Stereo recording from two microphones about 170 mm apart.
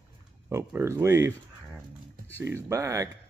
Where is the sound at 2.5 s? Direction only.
15° right (ahead or behind).